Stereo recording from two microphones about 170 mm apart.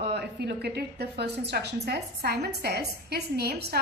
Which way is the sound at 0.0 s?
80° right.